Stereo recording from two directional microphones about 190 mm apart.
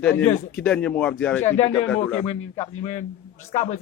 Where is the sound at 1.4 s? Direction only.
35° left (ahead or behind).